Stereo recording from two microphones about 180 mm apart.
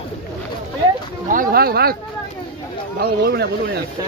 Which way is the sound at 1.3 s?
55° right (ahead or behind).